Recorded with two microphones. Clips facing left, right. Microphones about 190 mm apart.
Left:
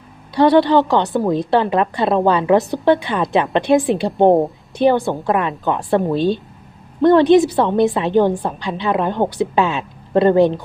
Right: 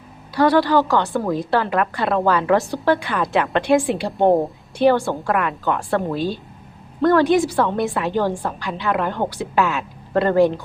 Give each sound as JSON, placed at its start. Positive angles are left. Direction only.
{"t": 0.3, "sound": "a woman's voice", "side_deg": 25}